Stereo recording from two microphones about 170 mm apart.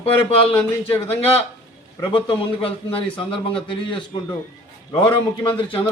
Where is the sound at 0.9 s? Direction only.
35° left (ahead or behind).